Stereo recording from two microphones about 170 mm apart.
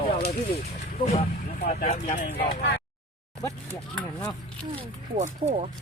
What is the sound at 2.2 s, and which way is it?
Speech, 65° left (ahead or behind).